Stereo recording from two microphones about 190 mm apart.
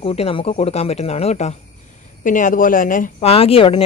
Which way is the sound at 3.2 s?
30° left (ahead or behind).